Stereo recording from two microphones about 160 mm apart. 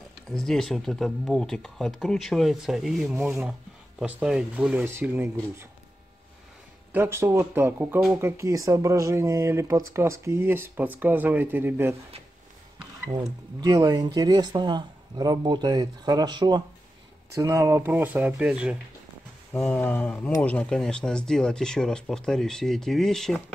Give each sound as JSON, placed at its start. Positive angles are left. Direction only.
{"t": 0.3, "sound": "speech", "side_deg": 0}
{"t": 3.2, "sound": "speech", "side_deg": -15}
{"t": 6.9, "sound": "speech", "side_deg": -15}
{"t": 13.1, "sound": "speech", "side_deg": -25}
{"t": 19.5, "sound": "speech", "side_deg": 10}